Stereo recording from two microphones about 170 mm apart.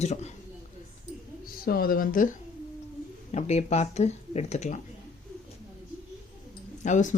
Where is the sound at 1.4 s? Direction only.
60° left (ahead or behind).